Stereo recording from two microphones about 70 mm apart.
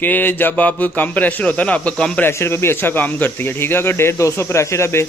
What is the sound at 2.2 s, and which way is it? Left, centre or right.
Speech, left.